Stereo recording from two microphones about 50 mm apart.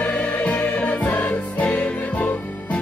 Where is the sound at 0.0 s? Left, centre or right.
Left.